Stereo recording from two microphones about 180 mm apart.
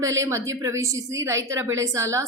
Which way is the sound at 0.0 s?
15° right (ahead or behind).